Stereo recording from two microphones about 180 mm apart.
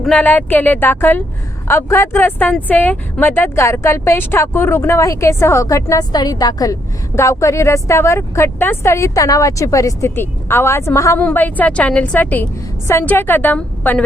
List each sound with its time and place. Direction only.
0.0 s speech: 10° left (ahead or behind)